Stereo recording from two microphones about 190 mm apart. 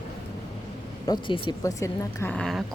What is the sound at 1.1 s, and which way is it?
Speech, 25° left (ahead or behind).